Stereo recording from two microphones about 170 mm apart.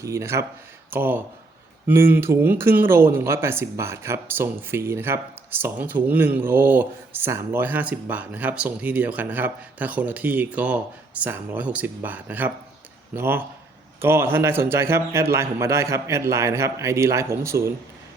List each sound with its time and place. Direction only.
0.0 s speech: 15° right (ahead or behind)